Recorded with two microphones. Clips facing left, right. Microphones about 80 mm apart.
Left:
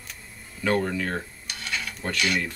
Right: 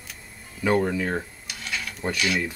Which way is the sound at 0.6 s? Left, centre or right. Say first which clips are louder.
Right 2 dB; centre.